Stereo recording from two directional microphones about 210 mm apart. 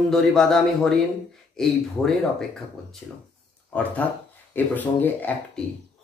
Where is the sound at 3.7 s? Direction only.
5° left (ahead or behind).